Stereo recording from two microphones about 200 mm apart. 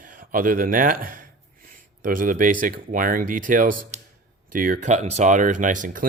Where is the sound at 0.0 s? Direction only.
45° right (ahead or behind).